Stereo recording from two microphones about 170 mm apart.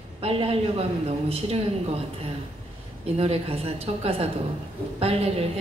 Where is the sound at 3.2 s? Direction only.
35° right (ahead or behind).